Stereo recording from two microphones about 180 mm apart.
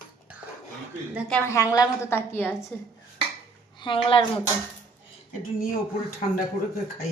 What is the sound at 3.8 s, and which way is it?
Speech, 30° left (ahead or behind).